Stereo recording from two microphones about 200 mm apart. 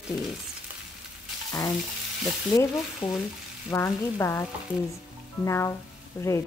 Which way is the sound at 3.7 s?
15° left (ahead or behind).